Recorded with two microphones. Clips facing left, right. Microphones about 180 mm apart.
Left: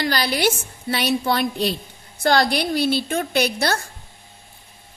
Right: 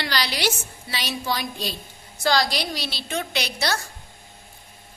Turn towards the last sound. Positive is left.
turn(degrees=55)  # may be behind; listen again after turning